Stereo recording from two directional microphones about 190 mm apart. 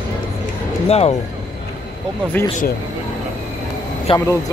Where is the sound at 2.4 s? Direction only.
10° left (ahead or behind).